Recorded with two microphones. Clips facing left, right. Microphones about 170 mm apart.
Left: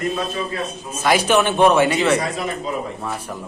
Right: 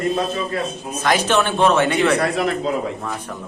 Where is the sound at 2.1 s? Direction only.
65° right (ahead or behind).